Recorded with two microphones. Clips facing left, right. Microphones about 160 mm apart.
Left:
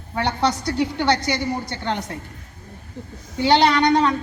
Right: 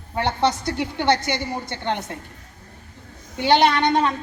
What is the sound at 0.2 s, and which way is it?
A woman's voice, 25° right (ahead or behind).